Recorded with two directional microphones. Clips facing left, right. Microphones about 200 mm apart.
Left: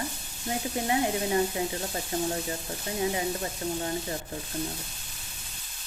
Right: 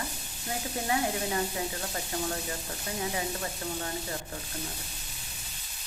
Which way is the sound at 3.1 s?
25° left (ahead or behind).